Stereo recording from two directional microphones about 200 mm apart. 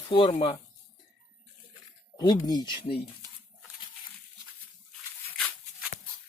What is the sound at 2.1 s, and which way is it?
Speech, 20° left (ahead or behind).